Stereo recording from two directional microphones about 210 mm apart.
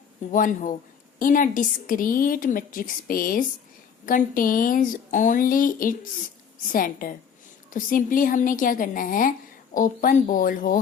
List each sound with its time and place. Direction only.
0.3 s a woman's voice: 40° left (ahead or behind)